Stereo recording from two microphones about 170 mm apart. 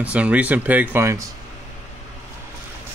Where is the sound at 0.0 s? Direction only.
5° right (ahead or behind).